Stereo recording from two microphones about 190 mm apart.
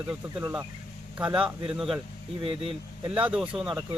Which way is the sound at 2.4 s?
30° right (ahead or behind).